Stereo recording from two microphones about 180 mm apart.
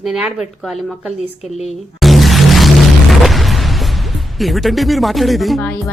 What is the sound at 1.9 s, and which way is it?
Music, centre (ahead or behind).